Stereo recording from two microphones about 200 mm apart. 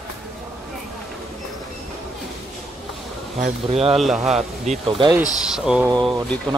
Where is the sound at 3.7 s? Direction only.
30° right (ahead or behind).